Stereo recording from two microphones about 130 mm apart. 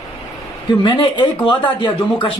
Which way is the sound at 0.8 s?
45° left (ahead or behind).